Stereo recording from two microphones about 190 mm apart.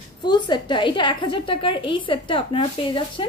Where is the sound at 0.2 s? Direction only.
25° left (ahead or behind).